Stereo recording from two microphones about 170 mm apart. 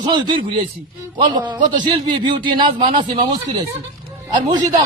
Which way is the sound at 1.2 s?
25° right (ahead or behind).